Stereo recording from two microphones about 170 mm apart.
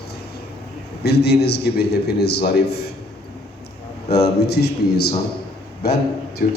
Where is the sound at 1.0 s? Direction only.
75° left (ahead or behind).